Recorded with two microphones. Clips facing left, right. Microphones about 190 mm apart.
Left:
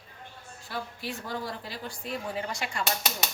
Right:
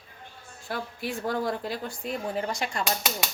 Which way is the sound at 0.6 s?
55° right (ahead or behind).